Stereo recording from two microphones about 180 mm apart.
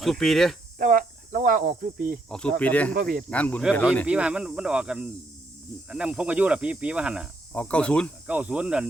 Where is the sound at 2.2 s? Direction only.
5° left (ahead or behind).